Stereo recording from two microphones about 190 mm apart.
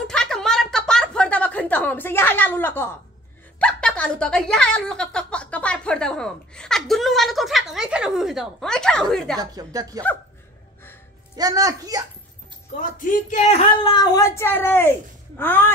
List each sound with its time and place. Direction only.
0.0 s a sound: 5° left (ahead or behind)
3.5 s a woman's voice: 5° left (ahead or behind)
9.4 s a woman's voice: 20° right (ahead or behind)
11.3 s a woman's voice: 20° right (ahead or behind)
12.9 s speech: 45° left (ahead or behind)
13.8 s speech: 20° left (ahead or behind)